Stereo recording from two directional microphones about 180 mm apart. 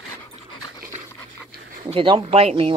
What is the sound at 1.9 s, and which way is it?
Speech, 30° right (ahead or behind).